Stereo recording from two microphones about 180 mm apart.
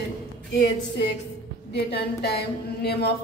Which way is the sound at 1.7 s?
65° left (ahead or behind).